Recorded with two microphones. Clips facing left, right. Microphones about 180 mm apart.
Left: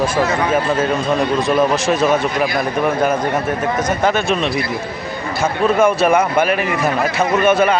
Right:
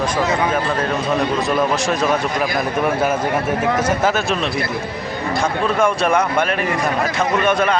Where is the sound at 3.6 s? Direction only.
10° right (ahead or behind).